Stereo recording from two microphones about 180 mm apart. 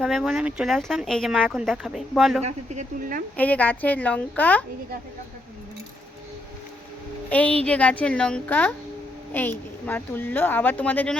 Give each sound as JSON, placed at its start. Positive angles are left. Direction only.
{"t": 0.0, "sound": "speech", "side_deg": 0}
{"t": 2.4, "sound": "speech", "side_deg": -40}
{"t": 3.3, "sound": "a woman's voice", "side_deg": 10}
{"t": 7.3, "sound": "a woman's voice", "side_deg": 5}